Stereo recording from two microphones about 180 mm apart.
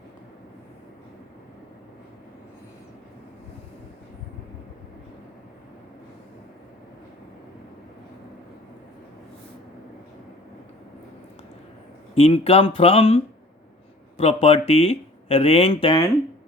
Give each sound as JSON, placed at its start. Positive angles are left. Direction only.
{"t": 12.1, "sound": "speech", "side_deg": 35}